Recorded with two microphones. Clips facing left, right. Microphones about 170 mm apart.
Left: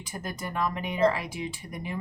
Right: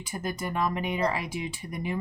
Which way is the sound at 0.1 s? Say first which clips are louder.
Right 3 dB; 10° right (ahead or behind).